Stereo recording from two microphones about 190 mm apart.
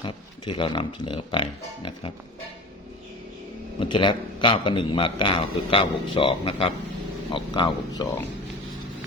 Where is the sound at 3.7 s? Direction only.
25° left (ahead or behind).